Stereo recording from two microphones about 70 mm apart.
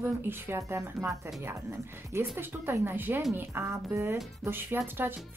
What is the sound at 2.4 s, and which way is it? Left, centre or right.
Speech, right.